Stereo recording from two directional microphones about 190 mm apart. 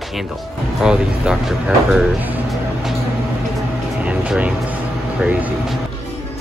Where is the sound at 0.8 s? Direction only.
5° right (ahead or behind).